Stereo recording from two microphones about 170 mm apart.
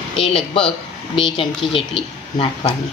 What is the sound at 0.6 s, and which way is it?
Speech, 30° left (ahead or behind).